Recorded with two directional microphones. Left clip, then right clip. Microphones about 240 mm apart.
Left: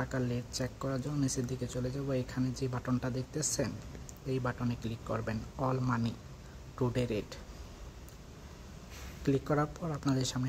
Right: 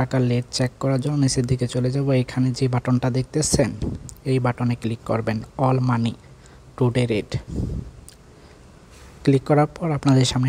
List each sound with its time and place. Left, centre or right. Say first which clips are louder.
0.0 s speech: right 13 dB; right
9.2 s speech: right 13 dB; right